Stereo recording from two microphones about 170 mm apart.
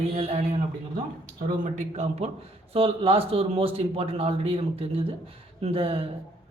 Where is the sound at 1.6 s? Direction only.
40° right (ahead or behind).